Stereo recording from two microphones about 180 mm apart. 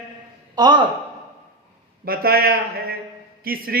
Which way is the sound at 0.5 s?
25° right (ahead or behind).